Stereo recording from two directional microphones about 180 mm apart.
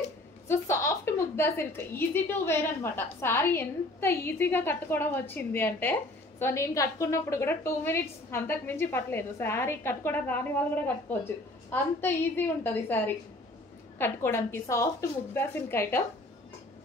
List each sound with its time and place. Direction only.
0.5 s a woman's voice: 15° left (ahead or behind)